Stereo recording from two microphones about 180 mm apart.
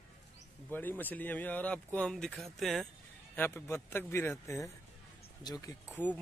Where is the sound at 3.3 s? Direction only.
10° left (ahead or behind).